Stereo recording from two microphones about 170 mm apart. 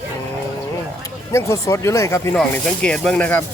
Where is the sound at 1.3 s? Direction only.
20° left (ahead or behind).